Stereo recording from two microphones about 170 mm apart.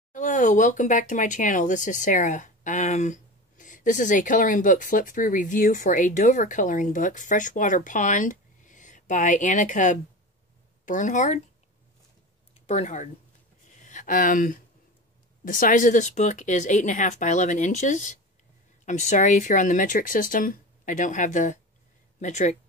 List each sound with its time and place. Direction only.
0.1 s speech: 45° left (ahead or behind)
12.6 s speech: 40° left (ahead or behind)
13.7 s a sound: 45° left (ahead or behind)
15.4 s speech: 50° left (ahead or behind)